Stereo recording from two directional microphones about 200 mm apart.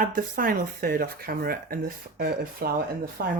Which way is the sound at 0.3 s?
45° right (ahead or behind).